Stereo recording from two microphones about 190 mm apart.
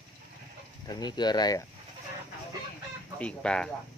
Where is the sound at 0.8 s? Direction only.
20° left (ahead or behind).